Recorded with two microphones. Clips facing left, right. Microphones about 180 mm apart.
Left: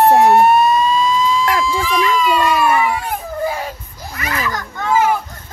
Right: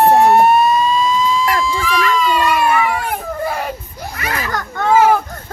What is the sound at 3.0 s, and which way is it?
Children playing, 65° right (ahead or behind).